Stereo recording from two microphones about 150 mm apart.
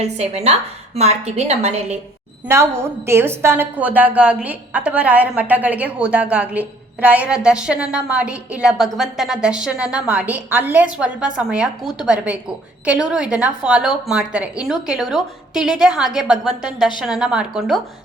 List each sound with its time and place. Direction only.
0.0 s a woman's voice: 45° right (ahead or behind)
2.5 s a woman's voice: 15° right (ahead or behind)